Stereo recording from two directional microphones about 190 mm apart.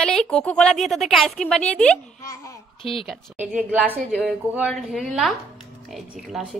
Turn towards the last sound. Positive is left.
turn(degrees=0)  # may be behind; listen again after turning